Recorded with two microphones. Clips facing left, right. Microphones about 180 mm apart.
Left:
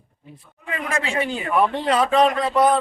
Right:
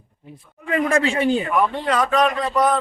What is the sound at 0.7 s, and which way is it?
Speech, 40° right (ahead or behind).